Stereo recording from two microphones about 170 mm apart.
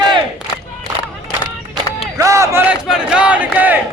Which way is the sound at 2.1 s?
20° right (ahead or behind).